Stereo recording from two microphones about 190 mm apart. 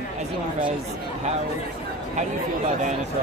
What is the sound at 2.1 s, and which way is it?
Speech, 40° right (ahead or behind).